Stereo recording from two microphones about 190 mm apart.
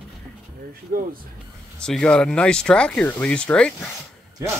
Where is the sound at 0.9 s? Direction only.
50° right (ahead or behind).